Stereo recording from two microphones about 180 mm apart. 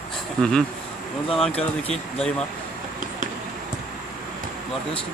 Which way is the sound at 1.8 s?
35° left (ahead or behind).